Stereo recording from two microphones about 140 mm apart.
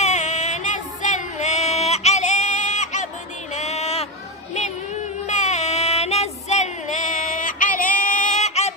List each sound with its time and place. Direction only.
0.0 s female singing: 55° left (ahead or behind)
3.5 s a sound: 50° left (ahead or behind)
5.2 s child singing: 55° left (ahead or behind)